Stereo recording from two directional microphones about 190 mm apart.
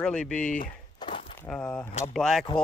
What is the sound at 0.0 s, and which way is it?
Speech, 5° left (ahead or behind).